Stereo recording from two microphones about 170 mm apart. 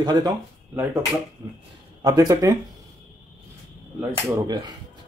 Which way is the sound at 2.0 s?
20° right (ahead or behind).